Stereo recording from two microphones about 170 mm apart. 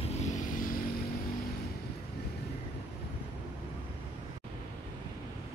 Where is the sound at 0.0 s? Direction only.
45° left (ahead or behind).